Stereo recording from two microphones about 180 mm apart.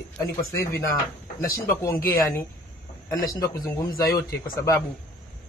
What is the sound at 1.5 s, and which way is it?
Speech, 15° left (ahead or behind).